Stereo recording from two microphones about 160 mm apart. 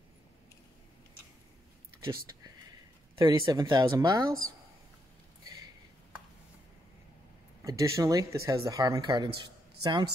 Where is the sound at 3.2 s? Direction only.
20° right (ahead or behind).